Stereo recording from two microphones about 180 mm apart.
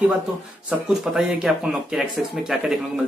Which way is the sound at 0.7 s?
5° right (ahead or behind).